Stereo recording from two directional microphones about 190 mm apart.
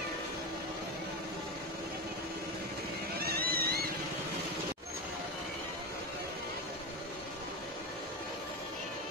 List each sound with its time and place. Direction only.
3.2 s vehicle: 55° right (ahead or behind)